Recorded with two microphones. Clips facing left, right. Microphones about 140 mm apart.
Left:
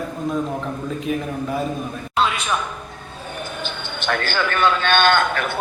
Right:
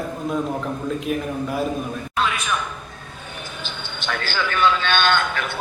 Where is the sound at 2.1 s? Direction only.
30° left (ahead or behind).